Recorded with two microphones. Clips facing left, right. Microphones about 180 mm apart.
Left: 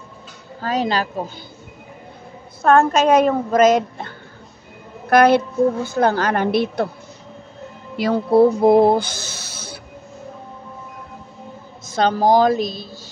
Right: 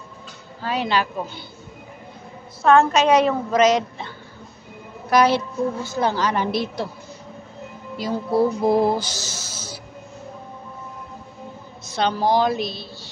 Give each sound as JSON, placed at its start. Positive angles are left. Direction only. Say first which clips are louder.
{"t": 0.6, "sound": "a woman's voice", "louder": "left 2 dB", "side_deg": 40}
{"t": 2.6, "sound": "a woman's voice", "louder": "left 1 dB", "side_deg": 50}
{"t": 5.1, "sound": "a woman's voice", "louder": "left 4 dB", "side_deg": 55}
{"t": 8.0, "sound": "a sound", "louder": "left 6 dB", "side_deg": 60}
{"t": 11.9, "sound": "a woman's voice", "louder": "left 4 dB", "side_deg": 45}